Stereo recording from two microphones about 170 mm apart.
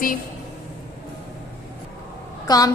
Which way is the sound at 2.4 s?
20° left (ahead or behind).